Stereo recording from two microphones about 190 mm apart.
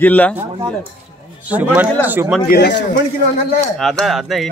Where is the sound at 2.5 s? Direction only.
65° left (ahead or behind).